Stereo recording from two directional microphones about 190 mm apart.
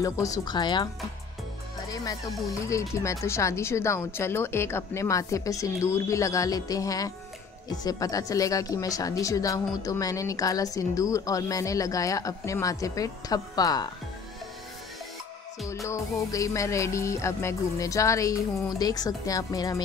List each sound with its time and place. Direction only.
0.0 s speech: 15° left (ahead or behind)
1.9 s speech: 20° left (ahead or behind)
15.6 s speech: 15° left (ahead or behind)